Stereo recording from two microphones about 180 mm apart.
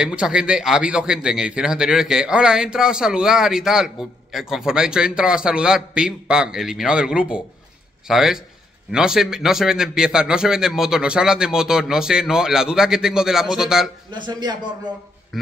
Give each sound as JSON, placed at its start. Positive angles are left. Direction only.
{"t": 0.0, "sound": "speech", "side_deg": -5}
{"t": 14.1, "sound": "speech", "side_deg": -25}